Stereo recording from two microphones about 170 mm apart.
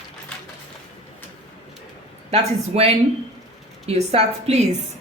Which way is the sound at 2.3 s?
35° right (ahead or behind).